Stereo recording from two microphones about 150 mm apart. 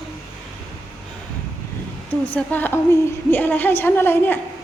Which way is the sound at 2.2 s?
10° left (ahead or behind).